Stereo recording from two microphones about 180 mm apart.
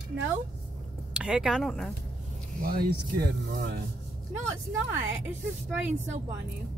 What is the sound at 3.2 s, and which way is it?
Speech, 60° right (ahead or behind).